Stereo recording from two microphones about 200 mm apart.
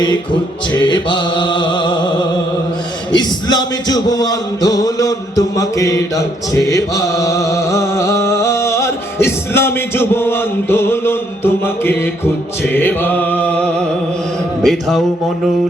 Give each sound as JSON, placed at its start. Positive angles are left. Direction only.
{"t": 0.7, "sound": "music", "side_deg": 20}